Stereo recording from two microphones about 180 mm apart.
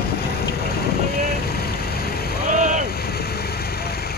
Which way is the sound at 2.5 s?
45° right (ahead or behind).